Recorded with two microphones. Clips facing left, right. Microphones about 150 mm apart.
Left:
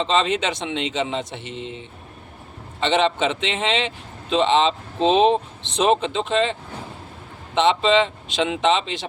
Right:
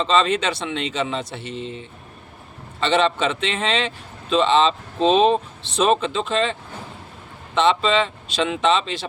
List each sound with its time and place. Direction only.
0.0 s a man's voice: 20° left (ahead or behind)
2.8 s a man's voice: 20° left (ahead or behind)